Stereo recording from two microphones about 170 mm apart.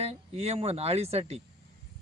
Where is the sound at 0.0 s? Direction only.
40° right (ahead or behind).